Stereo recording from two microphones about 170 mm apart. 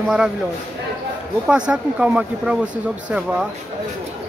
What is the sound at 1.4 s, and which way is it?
Speech, 5° right (ahead or behind).